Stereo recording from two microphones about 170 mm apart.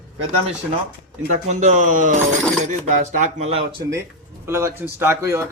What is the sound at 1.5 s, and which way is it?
Speech, 45° right (ahead or behind).